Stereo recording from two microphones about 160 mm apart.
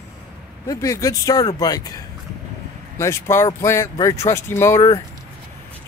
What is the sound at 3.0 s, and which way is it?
Speech, 15° left (ahead or behind).